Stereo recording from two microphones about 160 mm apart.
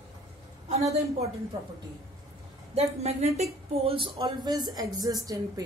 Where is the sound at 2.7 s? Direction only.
40° right (ahead or behind).